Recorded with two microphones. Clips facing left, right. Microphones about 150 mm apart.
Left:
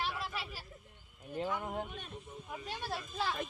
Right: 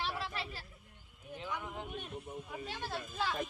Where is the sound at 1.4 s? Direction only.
50° left (ahead or behind).